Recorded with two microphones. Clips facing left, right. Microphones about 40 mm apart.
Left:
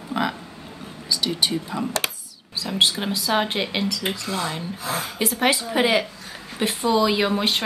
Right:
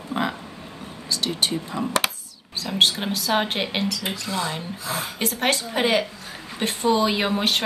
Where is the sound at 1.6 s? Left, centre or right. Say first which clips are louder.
Even; centre.